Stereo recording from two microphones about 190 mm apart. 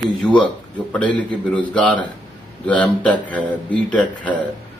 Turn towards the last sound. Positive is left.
turn(degrees=5)  # may be behind; listen again after turning